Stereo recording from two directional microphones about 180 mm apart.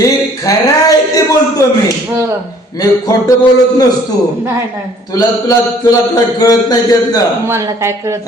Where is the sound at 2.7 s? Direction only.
20° left (ahead or behind).